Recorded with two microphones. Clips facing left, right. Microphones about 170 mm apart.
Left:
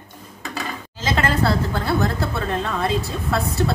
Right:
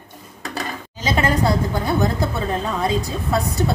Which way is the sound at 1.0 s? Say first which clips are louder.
Right 1 dB; 15° right (ahead or behind).